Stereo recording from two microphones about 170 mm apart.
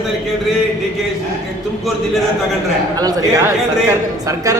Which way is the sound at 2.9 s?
20° right (ahead or behind).